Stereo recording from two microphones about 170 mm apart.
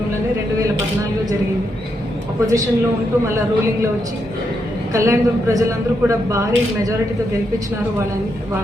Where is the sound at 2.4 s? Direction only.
20° right (ahead or behind).